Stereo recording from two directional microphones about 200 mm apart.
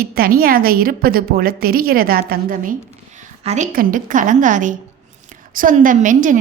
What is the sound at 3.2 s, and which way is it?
A woman's voice, 35° right (ahead or behind).